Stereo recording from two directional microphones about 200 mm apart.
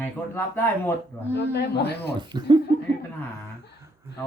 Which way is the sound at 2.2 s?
20° right (ahead or behind).